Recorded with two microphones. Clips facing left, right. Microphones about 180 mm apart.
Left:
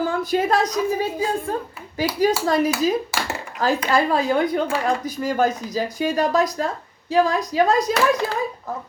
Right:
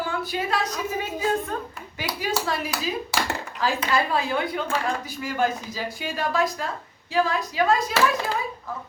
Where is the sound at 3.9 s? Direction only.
45° left (ahead or behind).